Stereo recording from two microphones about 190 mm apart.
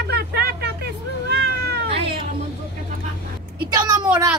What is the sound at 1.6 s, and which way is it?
Cat, 60° right (ahead or behind).